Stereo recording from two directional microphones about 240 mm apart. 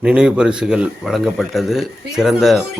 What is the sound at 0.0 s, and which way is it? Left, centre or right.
Speech, centre.